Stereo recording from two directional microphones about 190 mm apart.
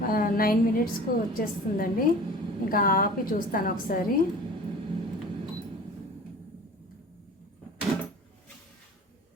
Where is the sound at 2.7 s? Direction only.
50° left (ahead or behind).